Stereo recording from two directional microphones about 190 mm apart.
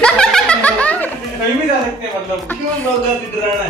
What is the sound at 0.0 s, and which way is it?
Snicker, 5° left (ahead or behind).